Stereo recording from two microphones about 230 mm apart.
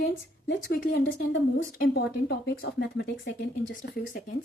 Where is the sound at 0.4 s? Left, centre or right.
Left.